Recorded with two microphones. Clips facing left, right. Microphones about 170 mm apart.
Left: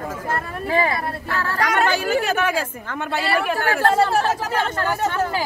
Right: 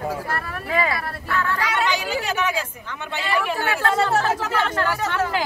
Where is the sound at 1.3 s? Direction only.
40° left (ahead or behind).